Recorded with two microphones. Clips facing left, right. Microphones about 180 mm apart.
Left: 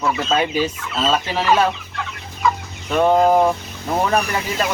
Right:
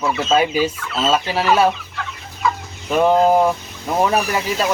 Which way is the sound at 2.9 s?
5° right (ahead or behind).